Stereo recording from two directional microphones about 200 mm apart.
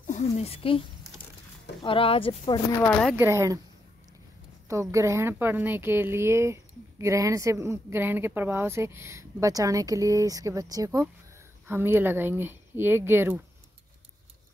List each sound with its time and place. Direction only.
0.0 s a sound: 40° left (ahead or behind)
1.8 s speech: 25° left (ahead or behind)
2.8 s speech: 5° left (ahead or behind)
3.2 s speech: 15° right (ahead or behind)
4.6 s speech: 15° right (ahead or behind)